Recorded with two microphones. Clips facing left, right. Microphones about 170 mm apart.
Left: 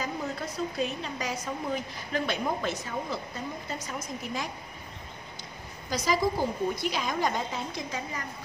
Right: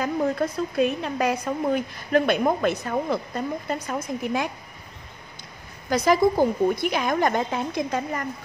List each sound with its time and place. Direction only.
0.0 s a woman's voice: 55° right (ahead or behind)
5.9 s a woman's voice: 60° right (ahead or behind)